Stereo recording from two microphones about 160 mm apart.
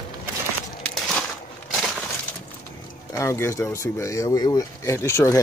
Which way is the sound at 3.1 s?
15° left (ahead or behind).